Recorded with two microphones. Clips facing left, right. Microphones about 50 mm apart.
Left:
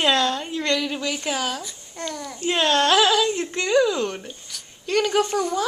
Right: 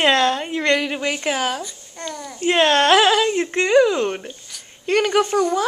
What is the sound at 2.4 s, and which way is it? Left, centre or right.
Speech, right.